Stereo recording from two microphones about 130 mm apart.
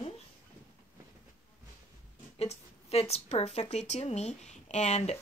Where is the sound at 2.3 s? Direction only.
55° left (ahead or behind).